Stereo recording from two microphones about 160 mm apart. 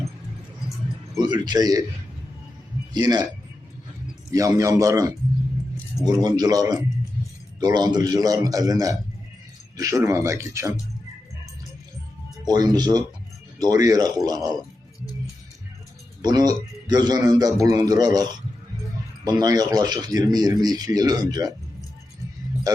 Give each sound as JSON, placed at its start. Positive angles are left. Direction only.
{"t": 1.2, "sound": "speech", "side_deg": -25}
{"t": 2.9, "sound": "speech", "side_deg": -25}
{"t": 4.3, "sound": "speech", "side_deg": -20}
{"t": 12.5, "sound": "speech", "side_deg": -25}
{"t": 16.2, "sound": "speech", "side_deg": -25}
{"t": 22.7, "sound": "speech", "side_deg": -20}